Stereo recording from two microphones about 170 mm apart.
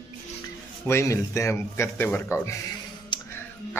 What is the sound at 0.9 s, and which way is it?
A man's voice, 15° left (ahead or behind).